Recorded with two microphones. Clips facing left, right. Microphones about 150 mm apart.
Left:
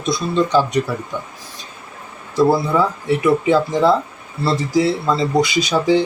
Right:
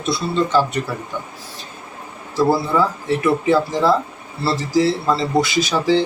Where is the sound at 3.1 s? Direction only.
15° left (ahead or behind).